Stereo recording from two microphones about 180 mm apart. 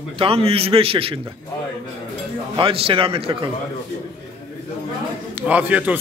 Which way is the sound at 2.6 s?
30° right (ahead or behind).